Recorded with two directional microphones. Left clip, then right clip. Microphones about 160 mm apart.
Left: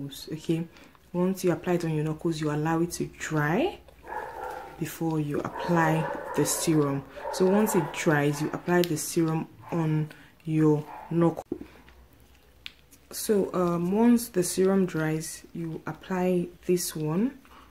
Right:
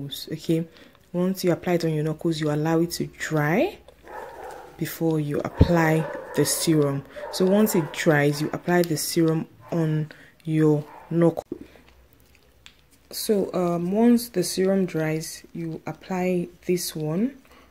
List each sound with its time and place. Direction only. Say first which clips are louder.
0.1 s speech: right 6 dB; 35° right (ahead or behind)
4.7 s speech: right 6 dB; 35° right (ahead or behind)
13.1 s speech: right 2 dB; 20° right (ahead or behind)